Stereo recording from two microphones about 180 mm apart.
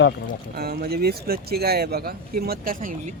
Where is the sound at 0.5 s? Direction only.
60° right (ahead or behind).